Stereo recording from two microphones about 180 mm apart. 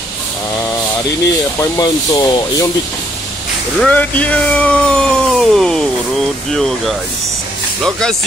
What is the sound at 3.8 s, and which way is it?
Speech, 10° left (ahead or behind).